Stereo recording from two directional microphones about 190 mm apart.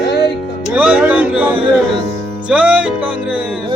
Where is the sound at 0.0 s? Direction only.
60° left (ahead or behind).